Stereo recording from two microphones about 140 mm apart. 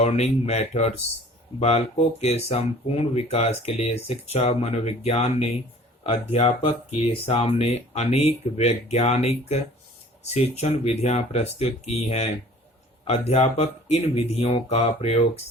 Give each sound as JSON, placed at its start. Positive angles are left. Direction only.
{"t": 0.0, "sound": "speech", "side_deg": 50}